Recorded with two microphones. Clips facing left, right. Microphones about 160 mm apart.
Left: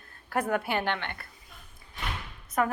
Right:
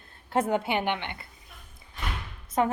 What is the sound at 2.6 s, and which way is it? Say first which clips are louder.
Speech: right 2 dB; 25° right (ahead or behind).